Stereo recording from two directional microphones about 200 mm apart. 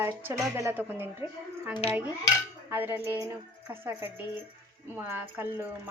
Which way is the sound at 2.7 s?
10° right (ahead or behind).